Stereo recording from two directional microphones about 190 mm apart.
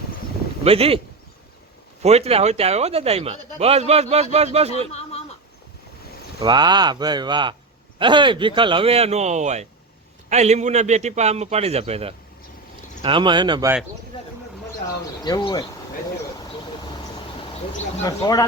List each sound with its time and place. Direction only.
0.6 s speech: 30° right (ahead or behind)
2.0 s speech: 35° right (ahead or behind)
4.9 s a sound: 35° left (ahead or behind)
6.4 s speech: 25° right (ahead or behind)
14.1 s a sound: 30° left (ahead or behind)
15.2 s speech: 20° left (ahead or behind)
16.4 s vehicle: 25° left (ahead or behind)
17.7 s speech: 40° left (ahead or behind)
18.0 s speech: 20° left (ahead or behind)